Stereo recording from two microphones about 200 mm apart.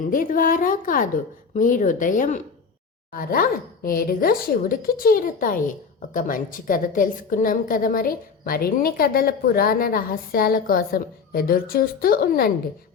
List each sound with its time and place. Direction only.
0.0 s a woman's voice: 40° left (ahead or behind)